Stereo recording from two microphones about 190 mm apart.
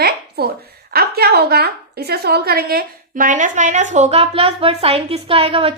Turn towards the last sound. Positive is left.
turn(degrees=-30)  # may be behind; listen again after turning